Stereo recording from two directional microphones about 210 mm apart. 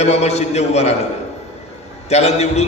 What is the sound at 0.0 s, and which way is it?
Speech, 30° left (ahead or behind).